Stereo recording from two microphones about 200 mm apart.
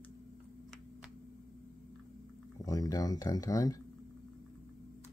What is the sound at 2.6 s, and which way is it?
Speech, 20° left (ahead or behind).